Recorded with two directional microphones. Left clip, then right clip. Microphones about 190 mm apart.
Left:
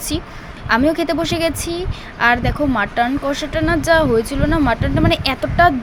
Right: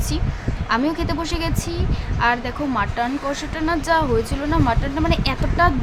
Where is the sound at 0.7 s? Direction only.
20° left (ahead or behind).